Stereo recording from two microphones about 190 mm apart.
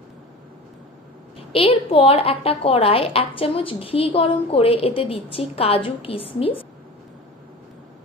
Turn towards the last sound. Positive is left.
turn(degrees=30)  # may be behind; listen again after turning